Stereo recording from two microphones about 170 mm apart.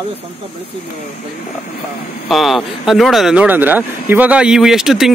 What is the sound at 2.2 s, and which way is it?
Speech, centre (ahead or behind).